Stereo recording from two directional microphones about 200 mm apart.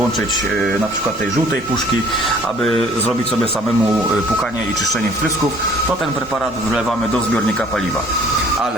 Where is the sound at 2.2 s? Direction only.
Centre (ahead or behind).